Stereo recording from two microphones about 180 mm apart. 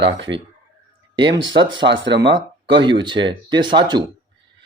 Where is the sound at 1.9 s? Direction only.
85° right.